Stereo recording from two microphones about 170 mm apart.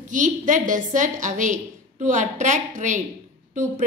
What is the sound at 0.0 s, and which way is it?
A woman's voice, 50° right (ahead or behind).